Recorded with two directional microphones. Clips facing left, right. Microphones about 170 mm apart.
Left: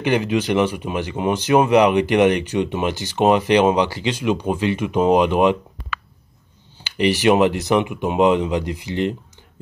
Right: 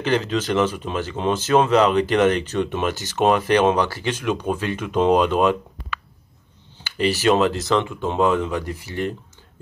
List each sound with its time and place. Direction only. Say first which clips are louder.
0.0 s speech: left 2 dB; 15° left (ahead or behind)
6.8 s speech: left 3 dB; 15° left (ahead or behind)